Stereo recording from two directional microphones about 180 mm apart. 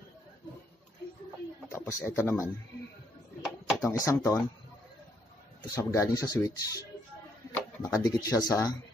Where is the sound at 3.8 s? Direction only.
15° left (ahead or behind).